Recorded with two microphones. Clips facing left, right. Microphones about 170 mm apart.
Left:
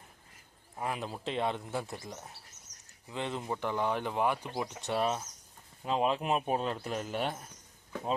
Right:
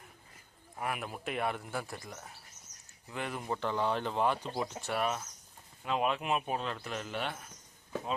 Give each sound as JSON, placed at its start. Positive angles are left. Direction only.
{"t": 0.8, "sound": "speech", "side_deg": 25}
{"t": 4.8, "sound": "speech", "side_deg": 25}